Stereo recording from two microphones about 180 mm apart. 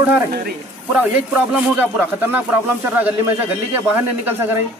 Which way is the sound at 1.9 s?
10° right (ahead or behind).